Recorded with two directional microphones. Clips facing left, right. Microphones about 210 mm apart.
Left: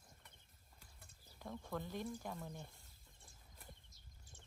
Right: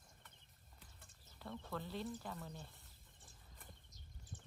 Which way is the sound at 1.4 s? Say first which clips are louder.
Left 1 dB; 15° left (ahead or behind).